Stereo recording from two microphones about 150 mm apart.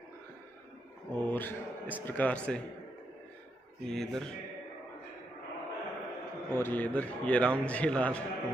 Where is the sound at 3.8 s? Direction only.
5° left (ahead or behind).